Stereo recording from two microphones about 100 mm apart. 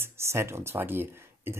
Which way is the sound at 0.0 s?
25° right (ahead or behind).